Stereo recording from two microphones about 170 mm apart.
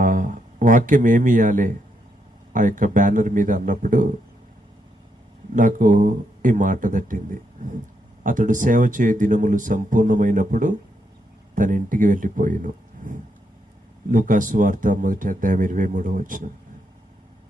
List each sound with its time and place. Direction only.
0.0 s speech: 50° right (ahead or behind)
5.5 s speech: 50° right (ahead or behind)